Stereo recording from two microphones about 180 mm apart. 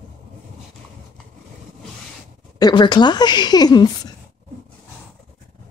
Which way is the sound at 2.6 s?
25° left (ahead or behind).